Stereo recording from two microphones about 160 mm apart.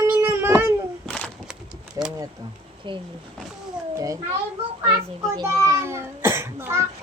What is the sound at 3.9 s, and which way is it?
Speech, 20° right (ahead or behind).